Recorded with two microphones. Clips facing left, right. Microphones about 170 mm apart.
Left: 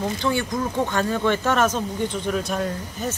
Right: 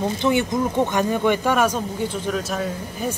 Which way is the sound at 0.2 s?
20° right (ahead or behind).